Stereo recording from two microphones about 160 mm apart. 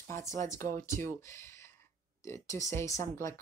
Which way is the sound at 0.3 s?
20° left (ahead or behind).